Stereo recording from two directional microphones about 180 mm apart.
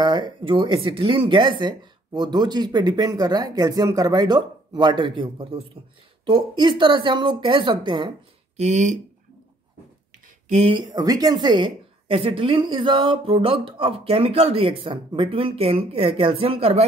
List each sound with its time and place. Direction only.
0.0 s speech: 25° right (ahead or behind)
8.5 s a woman's voice: 40° right (ahead or behind)
10.5 s a woman's voice: 30° right (ahead or behind)